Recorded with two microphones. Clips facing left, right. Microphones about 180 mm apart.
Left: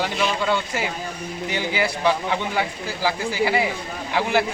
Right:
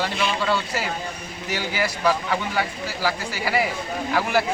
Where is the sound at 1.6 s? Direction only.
20° left (ahead or behind).